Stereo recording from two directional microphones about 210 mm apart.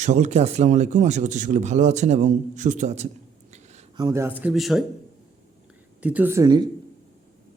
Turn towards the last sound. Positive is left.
turn(degrees=-20)  # may be behind; listen again after turning